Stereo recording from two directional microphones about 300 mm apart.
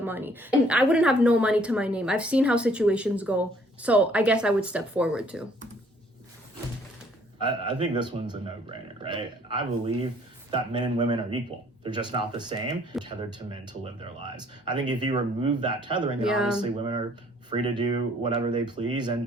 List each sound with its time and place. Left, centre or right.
0.0 s a woman's voice: centre
7.4 s speech: centre
16.2 s a woman's voice: centre
16.6 s speech: centre